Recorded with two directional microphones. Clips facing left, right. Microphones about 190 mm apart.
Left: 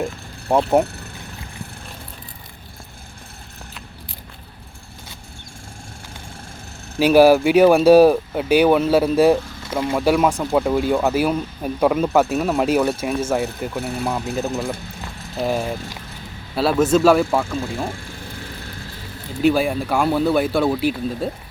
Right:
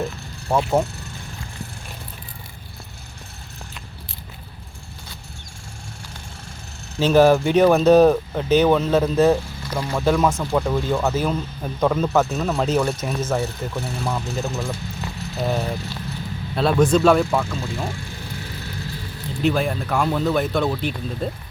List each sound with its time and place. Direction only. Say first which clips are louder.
0.5 s speech: left 3 dB; 20° left (ahead or behind)
7.0 s speech: left 3 dB; 10° left (ahead or behind)
19.4 s speech: left 4 dB; 10° left (ahead or behind)